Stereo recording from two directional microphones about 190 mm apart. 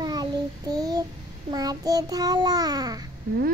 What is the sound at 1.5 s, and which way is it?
A child's voice, 20° right (ahead or behind).